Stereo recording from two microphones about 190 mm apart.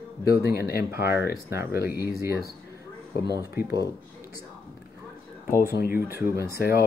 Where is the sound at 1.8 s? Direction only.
55° left (ahead or behind).